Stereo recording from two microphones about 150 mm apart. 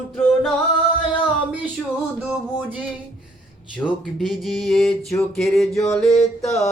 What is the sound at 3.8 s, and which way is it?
Music, centre (ahead or behind).